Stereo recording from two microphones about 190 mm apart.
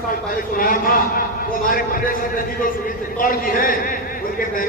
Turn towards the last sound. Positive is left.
turn(degrees=45)  # may be behind; listen again after turning